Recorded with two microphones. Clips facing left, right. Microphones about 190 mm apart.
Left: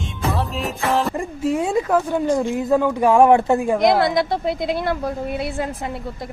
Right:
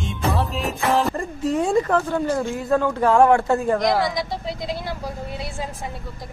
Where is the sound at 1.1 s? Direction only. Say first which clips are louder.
Left 1 dB; 10° left (ahead or behind).